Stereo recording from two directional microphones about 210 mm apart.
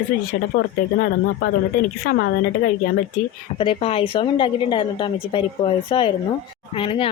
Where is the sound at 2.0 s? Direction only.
50° left (ahead or behind).